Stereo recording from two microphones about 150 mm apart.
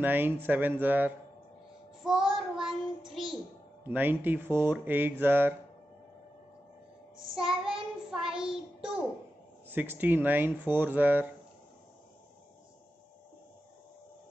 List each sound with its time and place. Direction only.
0.0 s speech: 15° right (ahead or behind)
2.3 s child singing: centre (ahead or behind)
3.9 s speech: 15° right (ahead or behind)
7.3 s child singing: 5° right (ahead or behind)
9.7 s speech: 15° right (ahead or behind)